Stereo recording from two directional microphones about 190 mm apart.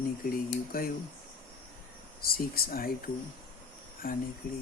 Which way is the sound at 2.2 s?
50° left (ahead or behind).